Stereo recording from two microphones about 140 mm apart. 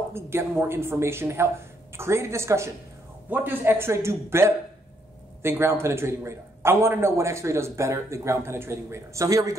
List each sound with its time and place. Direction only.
0.1 s a man's voice: 15° right (ahead or behind)